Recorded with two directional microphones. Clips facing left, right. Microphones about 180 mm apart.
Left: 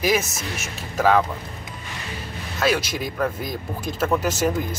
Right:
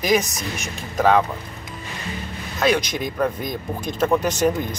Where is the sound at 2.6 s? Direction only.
5° left (ahead or behind).